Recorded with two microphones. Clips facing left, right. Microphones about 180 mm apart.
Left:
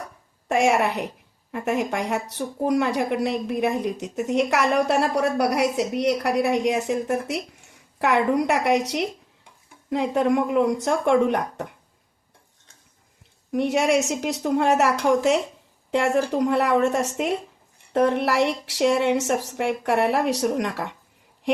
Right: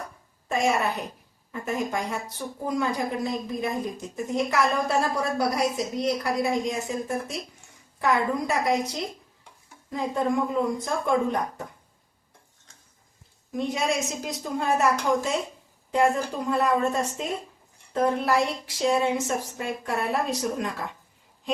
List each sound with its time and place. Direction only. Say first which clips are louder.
0.4 s a woman's voice: left 4 dB; 75° left (ahead or behind)
13.5 s a woman's voice: left 6 dB; 70° left (ahead or behind)